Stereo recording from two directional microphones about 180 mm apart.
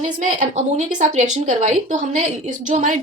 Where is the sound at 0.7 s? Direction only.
40° right (ahead or behind).